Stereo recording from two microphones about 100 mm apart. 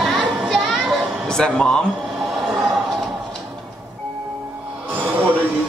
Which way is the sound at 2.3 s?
5° right (ahead or behind).